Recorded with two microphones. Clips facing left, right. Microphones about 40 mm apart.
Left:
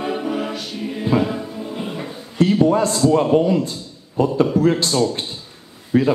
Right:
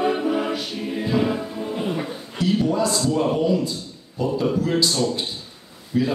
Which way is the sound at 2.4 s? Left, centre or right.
Left.